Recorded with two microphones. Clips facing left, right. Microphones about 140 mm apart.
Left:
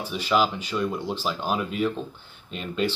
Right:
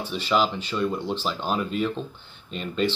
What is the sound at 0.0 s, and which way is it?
Speech, 10° left (ahead or behind).